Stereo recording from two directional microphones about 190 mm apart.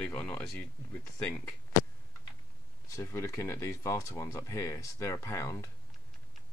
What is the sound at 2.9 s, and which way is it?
Speech, 15° left (ahead or behind).